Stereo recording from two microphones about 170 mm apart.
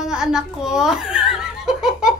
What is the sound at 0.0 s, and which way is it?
Giggle, 5° right (ahead or behind).